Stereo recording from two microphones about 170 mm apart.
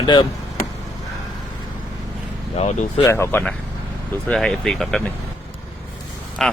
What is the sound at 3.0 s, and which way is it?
A man's voice, 15° left (ahead or behind).